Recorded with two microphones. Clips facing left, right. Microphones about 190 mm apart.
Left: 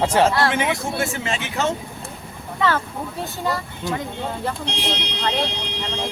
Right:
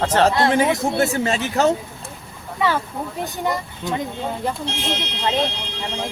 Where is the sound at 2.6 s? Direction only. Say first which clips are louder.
Even; 10° right (ahead or behind).